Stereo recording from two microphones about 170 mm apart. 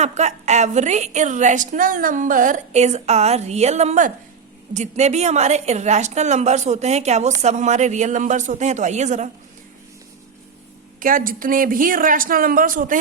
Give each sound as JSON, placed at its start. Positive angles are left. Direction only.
{"t": 0.0, "sound": "a woman's voice", "side_deg": -45}
{"t": 11.0, "sound": "a woman's voice", "side_deg": -55}